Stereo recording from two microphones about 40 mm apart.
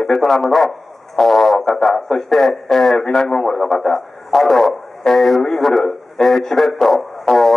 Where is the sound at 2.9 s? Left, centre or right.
Centre.